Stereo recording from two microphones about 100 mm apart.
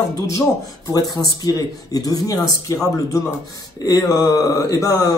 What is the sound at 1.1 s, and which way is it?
Speech, 40° left (ahead or behind).